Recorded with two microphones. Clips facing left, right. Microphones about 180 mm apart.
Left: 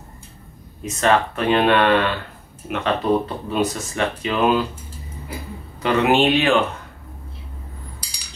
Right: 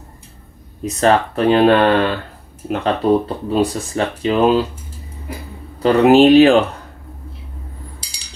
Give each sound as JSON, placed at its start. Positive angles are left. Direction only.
{"t": 0.8, "sound": "speech", "side_deg": -35}
{"t": 5.8, "sound": "speech", "side_deg": -35}